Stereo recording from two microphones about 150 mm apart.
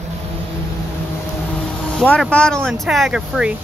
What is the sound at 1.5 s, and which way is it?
Vehicle, 5° left (ahead or behind).